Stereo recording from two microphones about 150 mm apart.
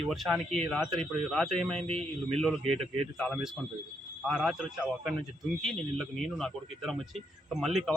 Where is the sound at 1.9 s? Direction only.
40° right (ahead or behind).